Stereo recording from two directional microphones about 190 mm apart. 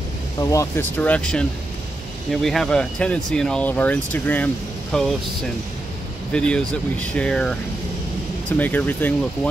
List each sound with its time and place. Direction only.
0.4 s speech: 15° left (ahead or behind)
2.4 s speech: centre (ahead or behind)
6.3 s speech: 5° left (ahead or behind)